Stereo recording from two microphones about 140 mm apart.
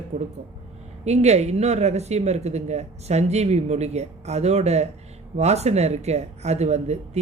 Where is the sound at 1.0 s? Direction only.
50° right (ahead or behind).